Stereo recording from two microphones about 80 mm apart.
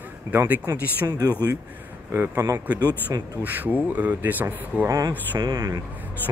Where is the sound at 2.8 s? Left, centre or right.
Right.